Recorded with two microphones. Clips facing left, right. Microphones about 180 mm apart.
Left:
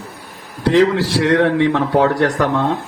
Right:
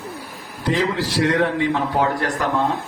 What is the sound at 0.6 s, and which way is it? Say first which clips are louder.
A man's voice: left 8 dB; 75° left (ahead or behind).